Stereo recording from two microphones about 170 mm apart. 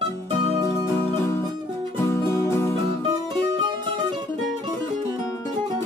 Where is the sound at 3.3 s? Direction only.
25° right (ahead or behind).